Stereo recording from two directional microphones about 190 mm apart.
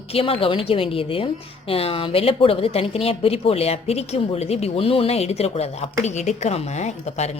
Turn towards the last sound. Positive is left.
turn(degrees=35)  # may be behind; listen again after turning